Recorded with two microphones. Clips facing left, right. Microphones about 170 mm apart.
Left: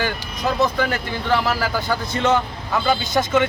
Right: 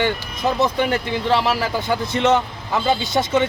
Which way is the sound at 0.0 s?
20° right (ahead or behind).